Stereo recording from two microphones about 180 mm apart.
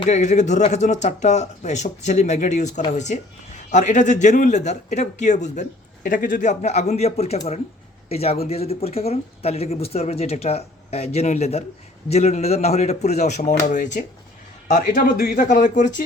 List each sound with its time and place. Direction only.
0.0 s a man's voice: 40° left (ahead or behind)